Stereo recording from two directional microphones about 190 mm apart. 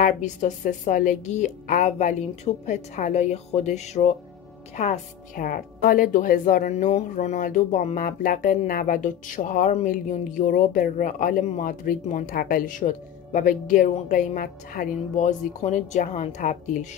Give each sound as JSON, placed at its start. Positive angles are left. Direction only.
{"t": 0.0, "sound": "a woman's voice", "side_deg": 40}